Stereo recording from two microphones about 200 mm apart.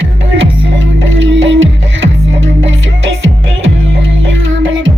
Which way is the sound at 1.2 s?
65° right (ahead or behind).